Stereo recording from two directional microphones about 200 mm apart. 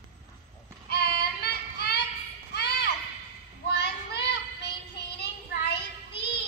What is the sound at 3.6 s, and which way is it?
Child singing, 55° left (ahead or behind).